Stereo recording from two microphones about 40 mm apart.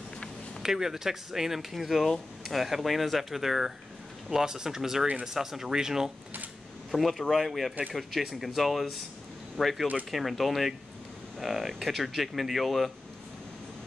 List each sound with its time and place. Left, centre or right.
0.6 s speech: centre
7.0 s speech: centre